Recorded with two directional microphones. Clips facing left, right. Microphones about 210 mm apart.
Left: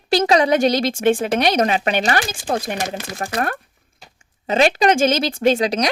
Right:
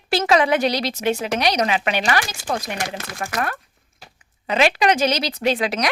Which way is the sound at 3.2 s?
35° left (ahead or behind).